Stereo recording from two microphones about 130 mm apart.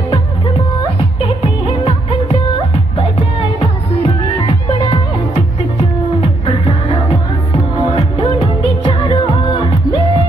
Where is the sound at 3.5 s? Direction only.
40° left (ahead or behind).